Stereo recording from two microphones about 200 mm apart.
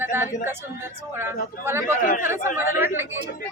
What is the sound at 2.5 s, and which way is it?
Speech, 10° right (ahead or behind).